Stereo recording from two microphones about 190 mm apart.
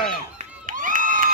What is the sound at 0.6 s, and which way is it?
Crowd, 45° right (ahead or behind).